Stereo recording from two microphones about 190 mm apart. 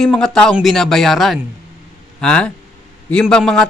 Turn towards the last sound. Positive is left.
turn(degrees=5)  # may be behind; listen again after turning